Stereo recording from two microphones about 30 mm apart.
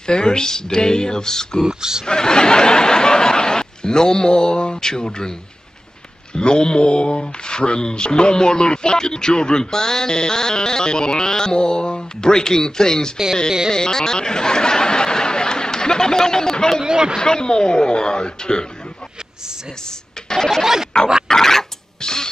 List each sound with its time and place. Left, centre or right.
0.0 s speech: left
1.7 s speech: right
2.0 s speech: left
6.3 s speech: left
16.8 s speech: right
17.2 s speech: left
20.2 s a sound: left
20.6 s speech: centre
21.3 s a sound: centre
22.0 s music: left